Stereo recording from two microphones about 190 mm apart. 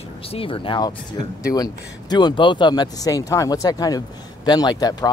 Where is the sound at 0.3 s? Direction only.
30° left (ahead or behind).